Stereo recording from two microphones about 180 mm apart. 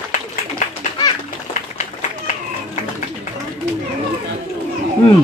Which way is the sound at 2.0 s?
40° left (ahead or behind).